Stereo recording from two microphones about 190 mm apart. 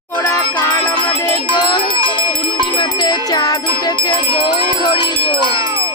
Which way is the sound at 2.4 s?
25° left (ahead or behind).